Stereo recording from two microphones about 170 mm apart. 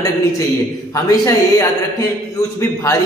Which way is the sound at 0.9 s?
20° left (ahead or behind).